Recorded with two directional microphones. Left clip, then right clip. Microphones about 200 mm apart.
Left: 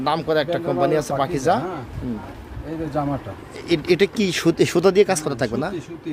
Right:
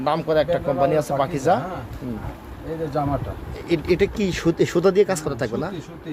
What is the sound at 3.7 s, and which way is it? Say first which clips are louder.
Speech: left 2 dB; 20° left (ahead or behind).